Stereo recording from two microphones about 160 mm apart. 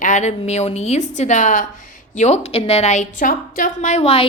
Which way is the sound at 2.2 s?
40° left (ahead or behind).